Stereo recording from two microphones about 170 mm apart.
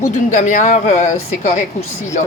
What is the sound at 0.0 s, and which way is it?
Speech, 45° left (ahead or behind).